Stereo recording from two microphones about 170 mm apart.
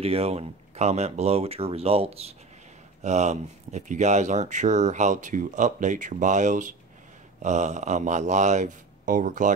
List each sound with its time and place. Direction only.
0.0 s speech: 35° right (ahead or behind)